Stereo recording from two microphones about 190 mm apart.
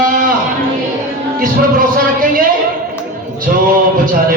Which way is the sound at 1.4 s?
50° right (ahead or behind).